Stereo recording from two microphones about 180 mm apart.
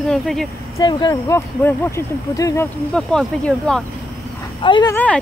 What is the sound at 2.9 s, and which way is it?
Speech, 5° left (ahead or behind).